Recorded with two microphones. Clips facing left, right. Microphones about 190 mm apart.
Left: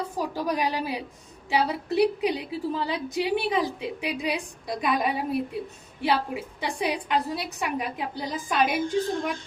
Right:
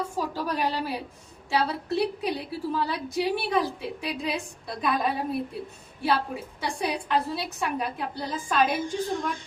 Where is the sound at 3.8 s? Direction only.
15° left (ahead or behind).